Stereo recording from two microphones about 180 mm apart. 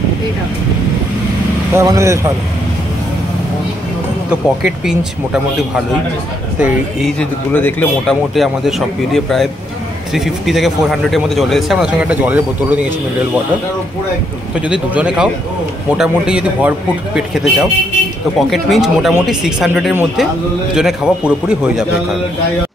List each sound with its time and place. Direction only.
1.7 s speech: 15° right (ahead or behind)
4.3 s speech: 5° right (ahead or behind)
6.6 s speech: centre (ahead or behind)
8.4 s speech: centre (ahead or behind)
14.7 s speech: 5° right (ahead or behind)